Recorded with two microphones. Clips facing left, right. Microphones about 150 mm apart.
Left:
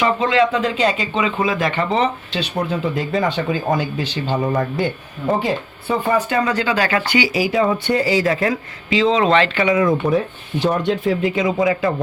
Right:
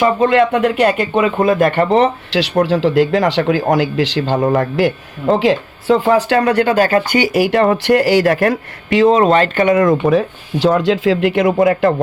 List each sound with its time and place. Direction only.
0.0 s speech: 50° right (ahead or behind); by 4.3 s 90° right
4.3 s speech: 50° right (ahead or behind)
4.5 s speech: 75° right (ahead or behind); by 11.9 s 60° right (ahead or behind)